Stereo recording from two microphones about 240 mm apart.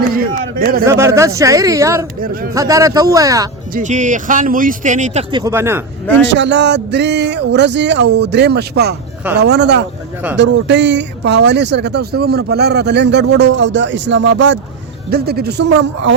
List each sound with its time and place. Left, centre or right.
0.2 s speech: right
0.9 s speech: centre
2.2 s speech: right
2.5 s speech: centre
3.8 s speech: right
5.3 s speech: centre
6.1 s speech: right